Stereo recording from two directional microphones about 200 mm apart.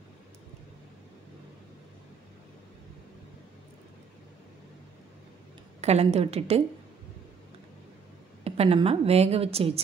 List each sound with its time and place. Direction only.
5.8 s a woman's voice: 30° right (ahead or behind)
8.5 s a woman's voice: 30° right (ahead or behind)